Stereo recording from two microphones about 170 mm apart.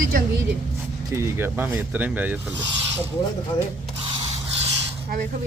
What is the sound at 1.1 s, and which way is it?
Speech, 15° right (ahead or behind).